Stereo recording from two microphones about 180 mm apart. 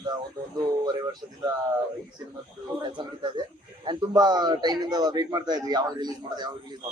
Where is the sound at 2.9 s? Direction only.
25° right (ahead or behind).